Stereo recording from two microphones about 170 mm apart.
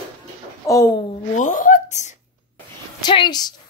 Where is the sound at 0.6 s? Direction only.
20° left (ahead or behind).